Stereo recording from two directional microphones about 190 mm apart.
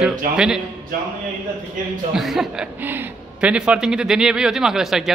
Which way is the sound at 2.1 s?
Centre (ahead or behind).